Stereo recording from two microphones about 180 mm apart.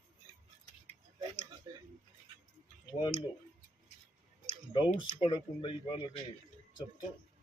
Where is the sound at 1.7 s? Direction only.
20° right (ahead or behind).